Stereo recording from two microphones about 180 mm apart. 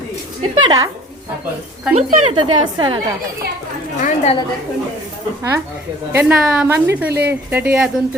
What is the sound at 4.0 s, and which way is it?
Speech, 45° left (ahead or behind).